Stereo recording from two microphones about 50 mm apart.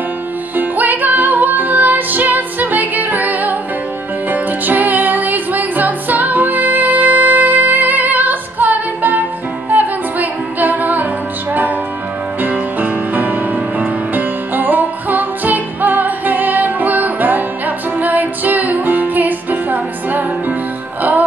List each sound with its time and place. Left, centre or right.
0.6 s music: right
12.4 s music: right